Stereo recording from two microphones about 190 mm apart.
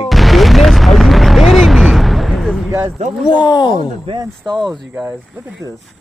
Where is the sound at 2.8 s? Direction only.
35° right (ahead or behind).